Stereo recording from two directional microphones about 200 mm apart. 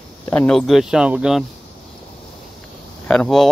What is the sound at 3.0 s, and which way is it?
Speech, 5° left (ahead or behind).